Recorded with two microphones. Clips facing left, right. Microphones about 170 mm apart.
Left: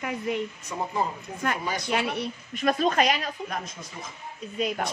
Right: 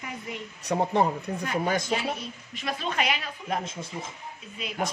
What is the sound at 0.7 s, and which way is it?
Speech, 65° right (ahead or behind).